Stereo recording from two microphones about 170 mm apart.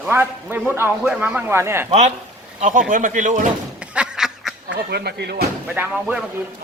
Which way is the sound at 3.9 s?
5° right (ahead or behind).